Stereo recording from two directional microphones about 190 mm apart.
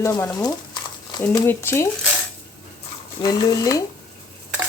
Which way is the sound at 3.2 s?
20° left (ahead or behind).